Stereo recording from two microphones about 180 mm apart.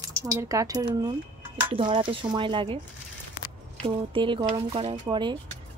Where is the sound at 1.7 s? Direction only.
30° right (ahead or behind).